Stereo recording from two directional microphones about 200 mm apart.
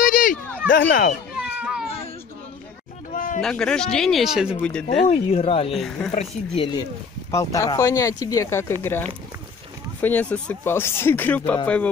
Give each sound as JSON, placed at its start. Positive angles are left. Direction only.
{"t": 0.0, "sound": "a sound", "side_deg": 40}
{"t": 0.7, "sound": "speech", "side_deg": 45}
{"t": 1.6, "sound": "baby cry", "side_deg": -5}
{"t": 3.3, "sound": "speech", "side_deg": 5}
{"t": 5.0, "sound": "speech", "side_deg": 30}
{"t": 5.7, "sound": "speech", "side_deg": 0}
{"t": 6.1, "sound": "speech", "side_deg": 25}
{"t": 7.2, "sound": "speech", "side_deg": 15}